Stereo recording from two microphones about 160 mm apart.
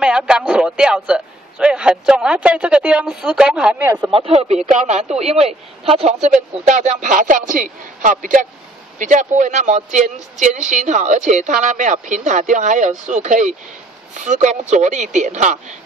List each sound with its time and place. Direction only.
0.0 s a man's voice: 5° right (ahead or behind)
4.1 s speech: 40° right (ahead or behind)